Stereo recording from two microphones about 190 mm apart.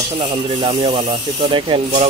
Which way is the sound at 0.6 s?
30° right (ahead or behind).